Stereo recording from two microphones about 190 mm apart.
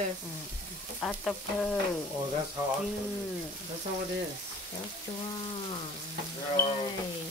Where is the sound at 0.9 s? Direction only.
5° left (ahead or behind).